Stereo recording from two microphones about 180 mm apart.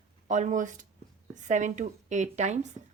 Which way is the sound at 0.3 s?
40° right (ahead or behind).